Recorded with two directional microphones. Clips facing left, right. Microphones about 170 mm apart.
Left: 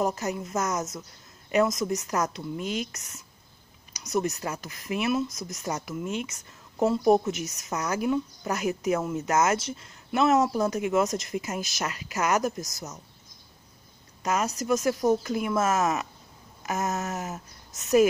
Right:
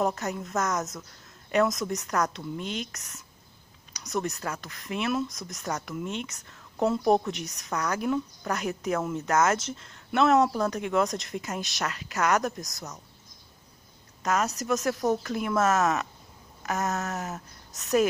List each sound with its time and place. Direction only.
0.0 s speech: centre (ahead or behind)
3.9 s a sound: 5° left (ahead or behind)
4.3 s speech: 20° left (ahead or behind)
4.6 s speech: 5° left (ahead or behind)
14.2 s speech: 5° left (ahead or behind)
16.6 s a sound: centre (ahead or behind)
17.0 s speech: centre (ahead or behind)